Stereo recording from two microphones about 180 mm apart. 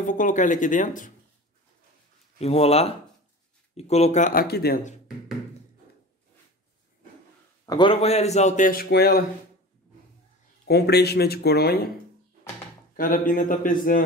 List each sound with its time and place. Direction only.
0.0 s speech: 45° left (ahead or behind)
2.3 s a man's voice: 35° left (ahead or behind); by 4.7 s 60° left (ahead or behind)
7.6 s a man's voice: 25° left (ahead or behind); by 9.2 s 60° left (ahead or behind)
10.7 s speech: 65° left (ahead or behind)
12.9 s speech: 50° left (ahead or behind)